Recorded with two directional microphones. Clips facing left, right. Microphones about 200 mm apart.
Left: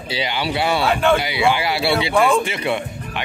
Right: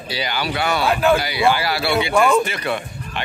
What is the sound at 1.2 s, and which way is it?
Speech, 20° left (ahead or behind).